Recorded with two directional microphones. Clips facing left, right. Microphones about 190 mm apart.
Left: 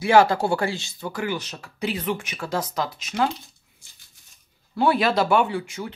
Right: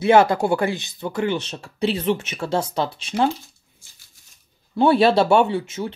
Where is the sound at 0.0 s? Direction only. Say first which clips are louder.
Right 2 dB; 20° right (ahead or behind).